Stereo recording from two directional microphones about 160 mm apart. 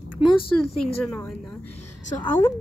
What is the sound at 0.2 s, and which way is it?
Speech, 35° left (ahead or behind).